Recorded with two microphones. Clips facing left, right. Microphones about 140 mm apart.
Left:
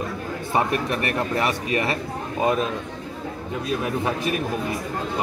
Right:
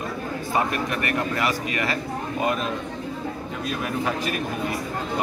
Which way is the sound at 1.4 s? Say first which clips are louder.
Left 2 dB; 25° left (ahead or behind).